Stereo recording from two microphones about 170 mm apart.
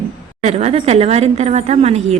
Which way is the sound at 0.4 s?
40° right (ahead or behind).